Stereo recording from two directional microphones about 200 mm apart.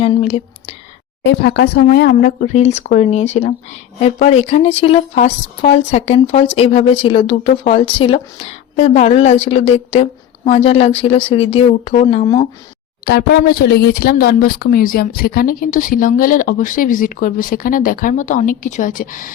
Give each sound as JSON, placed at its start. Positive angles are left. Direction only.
{"t": 0.0, "sound": "whispering", "side_deg": 30}
{"t": 1.2, "sound": "speech", "side_deg": 55}
{"t": 13.1, "sound": "speech", "side_deg": 50}